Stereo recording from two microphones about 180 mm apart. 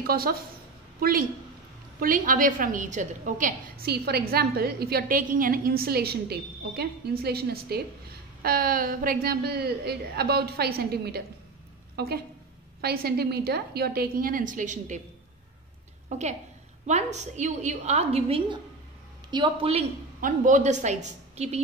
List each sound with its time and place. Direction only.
0.0 s a woman's voice: 55° right (ahead or behind)
2.0 s a woman's voice: 50° right (ahead or behind)
16.1 s a woman's voice: 40° right (ahead or behind)
20.2 s a woman's voice: 45° right (ahead or behind)